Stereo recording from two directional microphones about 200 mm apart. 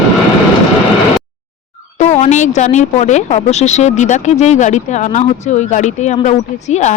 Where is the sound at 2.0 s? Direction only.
35° left (ahead or behind).